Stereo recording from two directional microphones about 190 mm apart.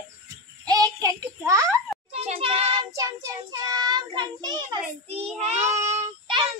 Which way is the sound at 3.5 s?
20° right (ahead or behind).